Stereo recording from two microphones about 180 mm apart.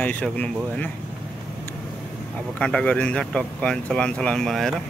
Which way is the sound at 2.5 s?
5° left (ahead or behind).